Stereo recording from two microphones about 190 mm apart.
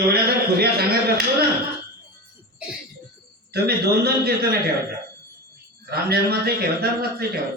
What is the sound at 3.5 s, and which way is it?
A man's voice, 55° right (ahead or behind).